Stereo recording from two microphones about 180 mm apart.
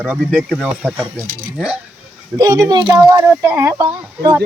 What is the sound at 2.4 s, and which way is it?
Speech, 20° right (ahead or behind).